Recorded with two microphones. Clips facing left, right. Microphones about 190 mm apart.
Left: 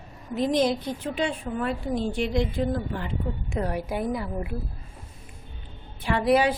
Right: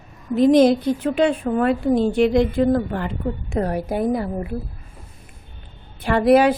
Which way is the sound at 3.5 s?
45° right (ahead or behind).